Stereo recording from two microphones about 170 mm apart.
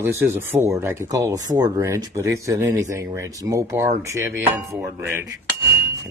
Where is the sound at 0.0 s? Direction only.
15° right (ahead or behind).